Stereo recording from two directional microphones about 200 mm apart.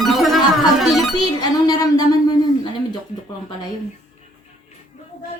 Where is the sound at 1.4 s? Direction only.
20° left (ahead or behind).